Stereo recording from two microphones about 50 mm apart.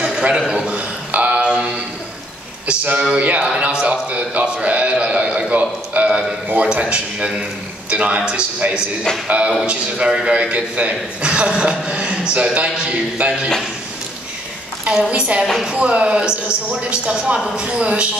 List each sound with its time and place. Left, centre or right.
0.0 s a sound: right
2.8 s a man's voice: right
9.7 s a man's voice: right
14.9 s a man's voice: right